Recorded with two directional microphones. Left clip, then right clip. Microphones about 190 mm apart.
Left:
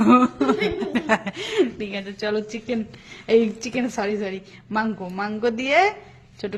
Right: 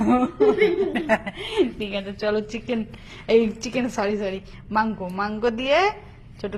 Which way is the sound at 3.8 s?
40° left (ahead or behind).